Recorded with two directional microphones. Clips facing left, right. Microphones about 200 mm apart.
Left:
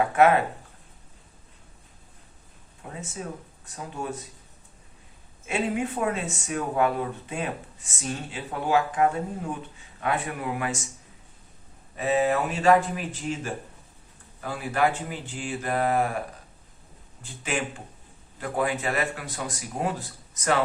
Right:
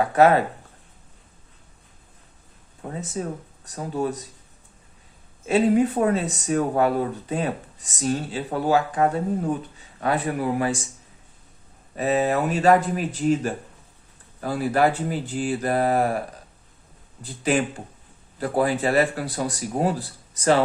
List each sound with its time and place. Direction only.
0.2 s speech: 35° right (ahead or behind)
2.8 s speech: 40° right (ahead or behind)
5.5 s speech: 35° right (ahead or behind)
11.9 s speech: 40° right (ahead or behind)
17.2 s speech: 35° right (ahead or behind)